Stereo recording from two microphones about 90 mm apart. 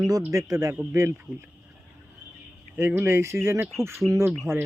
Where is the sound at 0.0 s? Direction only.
40° right (ahead or behind).